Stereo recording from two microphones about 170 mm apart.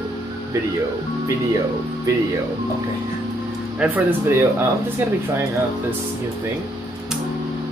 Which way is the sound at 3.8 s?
10° right (ahead or behind).